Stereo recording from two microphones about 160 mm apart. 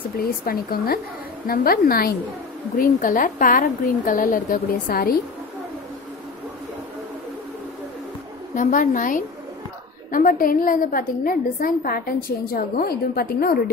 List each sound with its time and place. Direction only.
0.2 s a woman's voice: 70° left (ahead or behind)
8.5 s a woman's voice: 55° left (ahead or behind); by 13.6 s 70° left (ahead or behind)